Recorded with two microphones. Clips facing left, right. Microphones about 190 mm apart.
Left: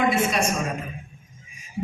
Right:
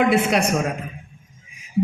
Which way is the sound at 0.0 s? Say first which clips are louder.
Right 4 dB; 65° right (ahead or behind).